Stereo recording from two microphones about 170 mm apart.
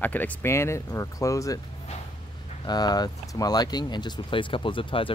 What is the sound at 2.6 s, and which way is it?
Speech, 25° left (ahead or behind).